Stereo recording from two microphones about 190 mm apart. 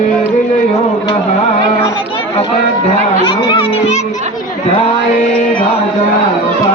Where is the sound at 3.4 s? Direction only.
30° left (ahead or behind).